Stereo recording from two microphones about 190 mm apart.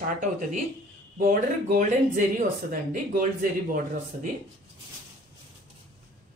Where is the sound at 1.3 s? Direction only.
45° right (ahead or behind).